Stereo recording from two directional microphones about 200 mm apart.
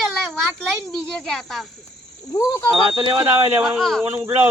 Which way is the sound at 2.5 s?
15° left (ahead or behind).